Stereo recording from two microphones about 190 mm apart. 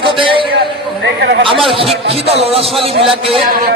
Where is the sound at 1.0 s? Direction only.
65° right (ahead or behind).